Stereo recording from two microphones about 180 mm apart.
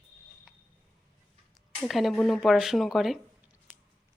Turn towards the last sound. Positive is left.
turn(degrees=0)  # may be behind; listen again after turning